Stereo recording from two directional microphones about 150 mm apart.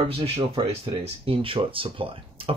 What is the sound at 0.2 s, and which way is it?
Speech, 40° right (ahead or behind).